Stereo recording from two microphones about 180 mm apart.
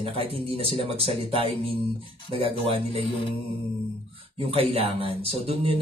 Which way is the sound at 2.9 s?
30° left (ahead or behind).